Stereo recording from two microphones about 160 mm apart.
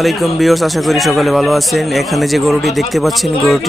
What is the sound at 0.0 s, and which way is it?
Speech, centre (ahead or behind).